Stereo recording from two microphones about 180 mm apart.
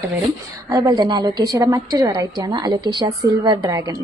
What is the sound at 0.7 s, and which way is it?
A woman's voice, 20° right (ahead or behind).